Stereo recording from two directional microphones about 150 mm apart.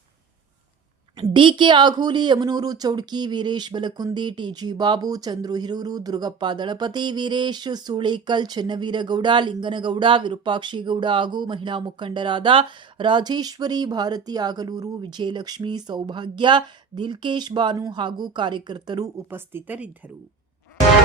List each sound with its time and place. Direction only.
1.2 s speech: 35° right (ahead or behind); by 19.9 s 10° right (ahead or behind)